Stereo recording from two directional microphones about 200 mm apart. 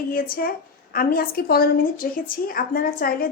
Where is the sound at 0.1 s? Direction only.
45° left (ahead or behind).